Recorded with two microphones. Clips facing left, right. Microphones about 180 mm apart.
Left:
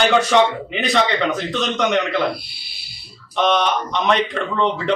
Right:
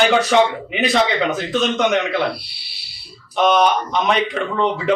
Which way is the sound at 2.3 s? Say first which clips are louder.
Even; 50° left (ahead or behind).